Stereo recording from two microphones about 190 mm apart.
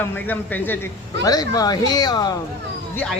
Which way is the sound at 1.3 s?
20° left (ahead or behind).